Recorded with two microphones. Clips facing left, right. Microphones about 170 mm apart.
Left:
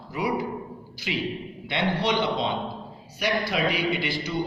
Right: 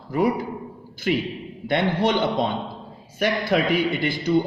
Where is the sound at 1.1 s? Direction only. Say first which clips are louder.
Right 6 dB; 55° right (ahead or behind).